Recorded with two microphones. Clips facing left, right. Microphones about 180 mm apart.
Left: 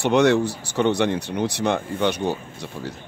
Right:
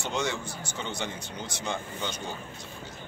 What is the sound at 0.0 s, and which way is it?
Speech, 65° left (ahead or behind).